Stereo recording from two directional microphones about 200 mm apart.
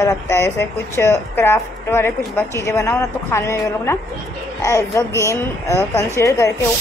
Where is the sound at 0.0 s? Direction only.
15° left (ahead or behind).